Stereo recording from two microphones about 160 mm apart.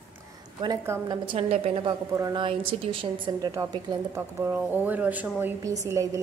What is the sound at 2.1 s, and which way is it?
Speech, 20° right (ahead or behind).